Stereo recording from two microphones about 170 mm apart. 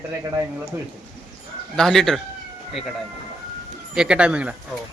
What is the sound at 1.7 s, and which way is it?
Speech, 5° left (ahead or behind).